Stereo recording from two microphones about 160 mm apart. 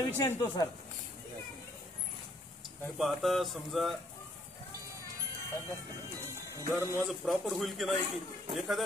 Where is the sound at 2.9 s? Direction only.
Centre (ahead or behind).